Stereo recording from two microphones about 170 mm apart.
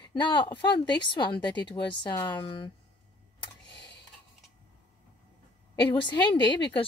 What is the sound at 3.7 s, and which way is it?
Computer keyboard, 80° left.